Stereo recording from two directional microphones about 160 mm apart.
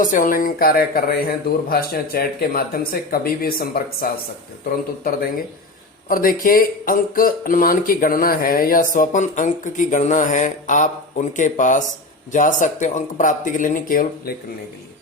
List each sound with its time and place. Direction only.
0.0 s speech: 55° left (ahead or behind)